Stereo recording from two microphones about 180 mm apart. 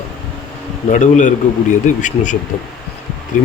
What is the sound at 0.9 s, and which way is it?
Speech, 40° left (ahead or behind).